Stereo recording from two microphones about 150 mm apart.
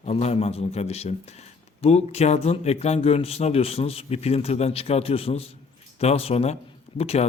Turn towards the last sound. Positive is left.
turn(degrees=40)  # may be behind; listen again after turning